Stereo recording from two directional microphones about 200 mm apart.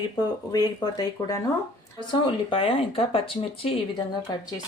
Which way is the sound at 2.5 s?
25° left (ahead or behind).